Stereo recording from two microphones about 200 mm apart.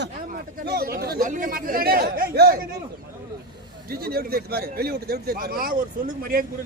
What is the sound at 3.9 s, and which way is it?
A man's voice, 50° right (ahead or behind).